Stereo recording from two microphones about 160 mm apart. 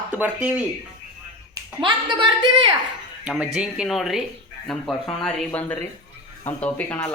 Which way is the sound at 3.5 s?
5° right (ahead or behind).